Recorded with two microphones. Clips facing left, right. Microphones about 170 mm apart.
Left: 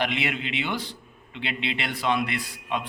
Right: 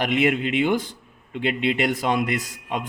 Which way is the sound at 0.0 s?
45° right (ahead or behind).